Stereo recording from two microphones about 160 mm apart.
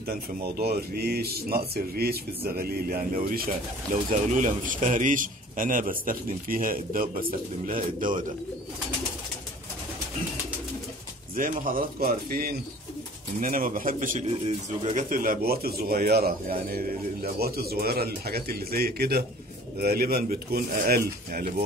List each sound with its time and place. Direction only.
0.0 s a man's voice: 75° right (ahead or behind); by 8.3 s 55° right (ahead or behind)
11.3 s a man's voice: 60° right (ahead or behind)